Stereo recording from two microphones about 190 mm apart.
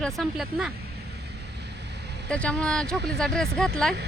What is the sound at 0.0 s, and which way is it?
Speech, centre (ahead or behind).